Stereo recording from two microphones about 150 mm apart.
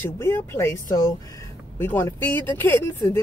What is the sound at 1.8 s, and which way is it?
Speech, 15° left (ahead or behind).